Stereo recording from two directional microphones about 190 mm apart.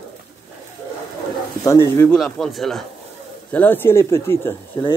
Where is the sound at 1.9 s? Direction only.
10° left (ahead or behind).